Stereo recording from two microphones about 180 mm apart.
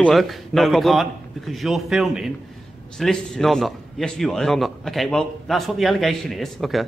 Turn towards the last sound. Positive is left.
turn(degrees=0)  # may be behind; listen again after turning